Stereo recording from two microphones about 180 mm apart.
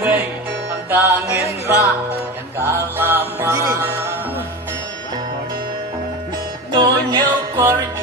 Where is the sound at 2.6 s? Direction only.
10° right (ahead or behind).